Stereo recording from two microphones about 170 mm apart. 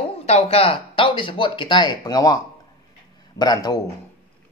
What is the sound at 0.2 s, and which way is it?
Speech, 35° left (ahead or behind).